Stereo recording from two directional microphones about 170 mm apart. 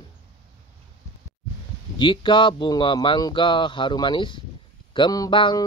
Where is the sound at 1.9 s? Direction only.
30° left (ahead or behind).